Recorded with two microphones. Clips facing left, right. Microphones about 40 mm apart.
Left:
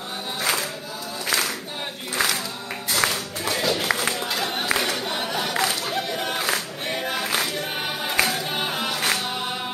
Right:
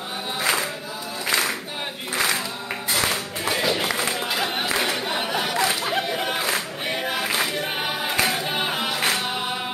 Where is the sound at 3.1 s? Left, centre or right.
Centre.